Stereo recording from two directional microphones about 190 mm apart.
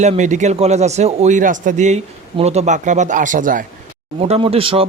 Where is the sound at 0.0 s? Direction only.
40° right (ahead or behind).